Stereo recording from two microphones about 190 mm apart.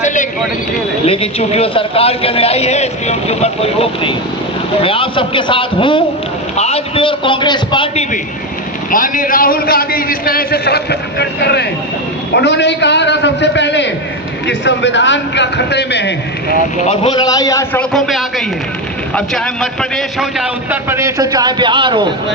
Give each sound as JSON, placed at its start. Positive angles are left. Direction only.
{"t": 0.0, "sound": "a sound", "side_deg": 40}
{"t": 1.0, "sound": "a man's voice", "side_deg": 30}
{"t": 8.9, "sound": "a man's voice", "side_deg": 45}
{"t": 16.7, "sound": "a man's voice", "side_deg": 35}
{"t": 17.7, "sound": "a man's voice", "side_deg": 0}
{"t": 19.8, "sound": "a man's voice", "side_deg": 0}